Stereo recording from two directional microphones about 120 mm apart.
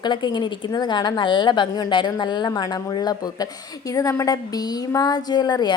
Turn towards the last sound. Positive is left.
turn(degrees=35)  # may be behind; listen again after turning